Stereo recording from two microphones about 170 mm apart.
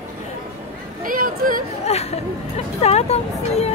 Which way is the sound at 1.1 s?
55° right (ahead or behind).